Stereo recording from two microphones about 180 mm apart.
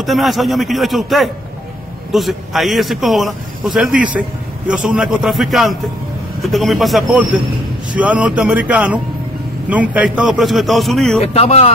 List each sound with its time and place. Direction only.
0.0 s a man's voice: centre (ahead or behind)
11.3 s speech: 35° left (ahead or behind)